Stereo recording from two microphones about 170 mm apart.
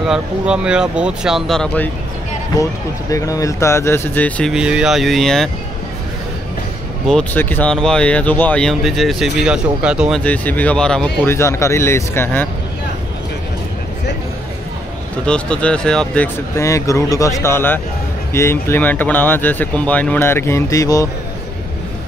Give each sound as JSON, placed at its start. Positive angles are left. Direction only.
{"t": 0.0, "sound": "speech", "side_deg": -5}
{"t": 3.1, "sound": "speech", "side_deg": 20}
{"t": 4.5, "sound": "speech", "side_deg": -5}
{"t": 7.1, "sound": "speech", "side_deg": 5}
{"t": 10.2, "sound": "speech", "side_deg": 10}
{"t": 11.3, "sound": "speech", "side_deg": 15}
{"t": 15.2, "sound": "speech", "side_deg": 5}
{"t": 16.5, "sound": "speech", "side_deg": 15}